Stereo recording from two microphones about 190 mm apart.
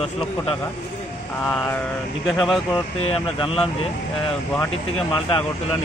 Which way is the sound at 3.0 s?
30° left (ahead or behind).